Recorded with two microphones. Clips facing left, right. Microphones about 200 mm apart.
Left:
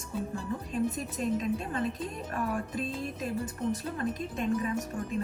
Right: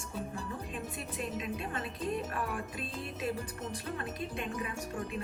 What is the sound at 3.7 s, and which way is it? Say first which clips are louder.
Speech: left 9 dB; 40° left (ahead or behind).